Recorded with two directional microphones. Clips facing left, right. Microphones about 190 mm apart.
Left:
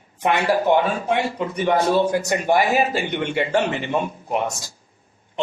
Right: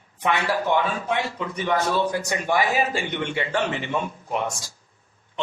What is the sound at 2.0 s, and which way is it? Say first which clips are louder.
A man's voice: left 5 dB; 50° left (ahead or behind).